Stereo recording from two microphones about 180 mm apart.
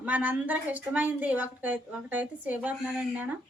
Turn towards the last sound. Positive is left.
turn(degrees=-10)  # may be behind; listen again after turning